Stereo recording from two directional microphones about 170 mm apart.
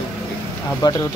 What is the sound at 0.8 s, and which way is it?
Speech, 20° left (ahead or behind).